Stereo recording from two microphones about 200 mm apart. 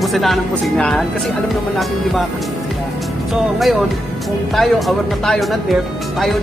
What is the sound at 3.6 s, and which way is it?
Speech, centre (ahead or behind).